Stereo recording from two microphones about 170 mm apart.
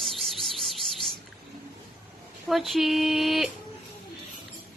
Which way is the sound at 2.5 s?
Centre (ahead or behind).